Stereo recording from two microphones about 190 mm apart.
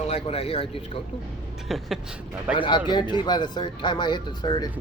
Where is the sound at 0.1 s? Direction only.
30° left (ahead or behind).